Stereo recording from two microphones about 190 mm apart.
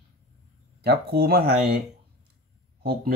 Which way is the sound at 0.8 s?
55° right (ahead or behind).